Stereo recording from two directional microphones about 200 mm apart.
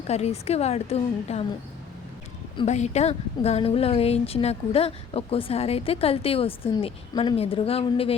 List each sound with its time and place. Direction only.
0.1 s a woman's voice: 30° left (ahead or behind)
2.6 s speech: 35° left (ahead or behind)